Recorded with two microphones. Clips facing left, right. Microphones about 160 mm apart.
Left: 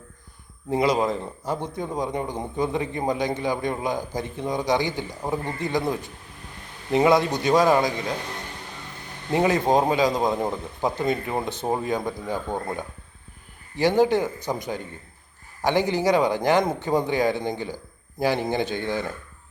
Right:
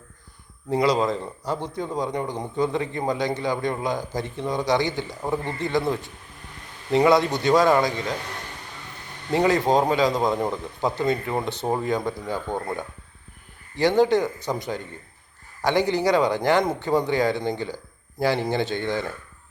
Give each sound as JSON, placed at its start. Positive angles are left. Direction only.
{"t": 0.7, "sound": "a man's voice", "side_deg": 20}
{"t": 5.5, "sound": "speech", "side_deg": -20}
{"t": 5.7, "sound": "a man's voice", "side_deg": 15}
{"t": 9.3, "sound": "a man's voice", "side_deg": 20}
{"t": 13.7, "sound": "a man's voice", "side_deg": 15}
{"t": 15.6, "sound": "a man's voice", "side_deg": 15}